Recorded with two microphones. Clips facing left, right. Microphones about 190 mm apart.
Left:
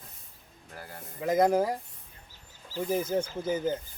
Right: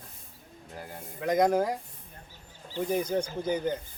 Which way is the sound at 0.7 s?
20° right (ahead or behind).